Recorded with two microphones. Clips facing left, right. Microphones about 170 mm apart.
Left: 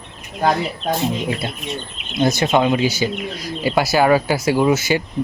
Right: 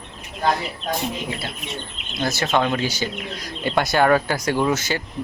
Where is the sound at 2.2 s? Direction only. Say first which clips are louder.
Left 5 dB; 15° left (ahead or behind).